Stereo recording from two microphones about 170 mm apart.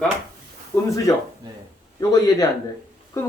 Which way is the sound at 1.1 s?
20° left (ahead or behind).